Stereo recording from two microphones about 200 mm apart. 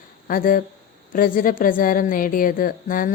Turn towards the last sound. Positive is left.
turn(degrees=45)  # may be behind; listen again after turning